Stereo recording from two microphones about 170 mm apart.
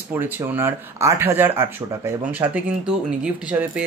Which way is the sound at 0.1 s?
10° right (ahead or behind).